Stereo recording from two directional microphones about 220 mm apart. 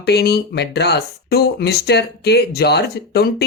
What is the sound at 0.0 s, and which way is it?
Speech, 50° left (ahead or behind).